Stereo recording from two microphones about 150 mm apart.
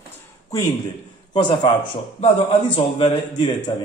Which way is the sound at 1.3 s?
30° left (ahead or behind).